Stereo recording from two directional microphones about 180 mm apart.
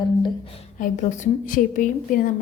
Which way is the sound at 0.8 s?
45° left (ahead or behind).